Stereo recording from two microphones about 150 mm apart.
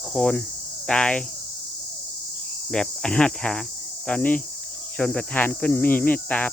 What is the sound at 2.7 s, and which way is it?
Speech, 5° left (ahead or behind).